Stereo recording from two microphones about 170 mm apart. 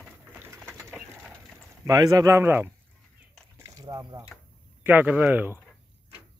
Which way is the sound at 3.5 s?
20° right (ahead or behind).